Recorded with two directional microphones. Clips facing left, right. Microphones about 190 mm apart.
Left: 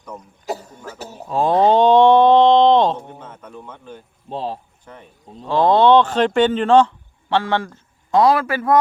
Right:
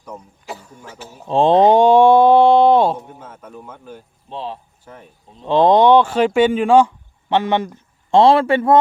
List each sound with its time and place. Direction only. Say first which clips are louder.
0.4 s speech: left 8 dB; 40° left (ahead or behind)
1.3 s a sound: right 3 dB; 25° right (ahead or behind); by 4.0 s 5° right (ahead or behind)
4.3 s speech: left 3 dB; 40° left (ahead or behind)
4.9 s speech: right 1 dB; 5° right (ahead or behind)
5.5 s speech: right 2 dB; 20° right (ahead or behind)